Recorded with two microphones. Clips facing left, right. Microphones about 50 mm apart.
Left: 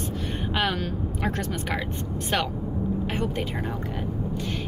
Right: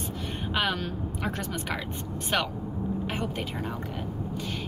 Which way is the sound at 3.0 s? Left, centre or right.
Centre.